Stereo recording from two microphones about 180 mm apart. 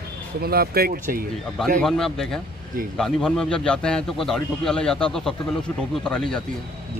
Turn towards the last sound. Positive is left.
turn(degrees=5)  # may be behind; listen again after turning